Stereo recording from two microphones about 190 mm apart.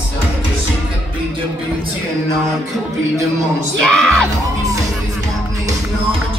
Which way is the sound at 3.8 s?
5° left (ahead or behind).